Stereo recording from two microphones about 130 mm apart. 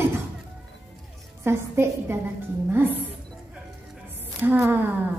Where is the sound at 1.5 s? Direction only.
20° right (ahead or behind).